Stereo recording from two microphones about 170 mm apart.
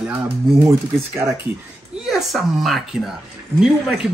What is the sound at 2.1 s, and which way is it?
Speech, centre (ahead or behind).